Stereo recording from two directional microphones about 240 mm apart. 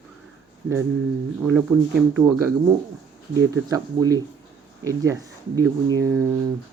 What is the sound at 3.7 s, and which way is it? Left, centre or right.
Speech, centre.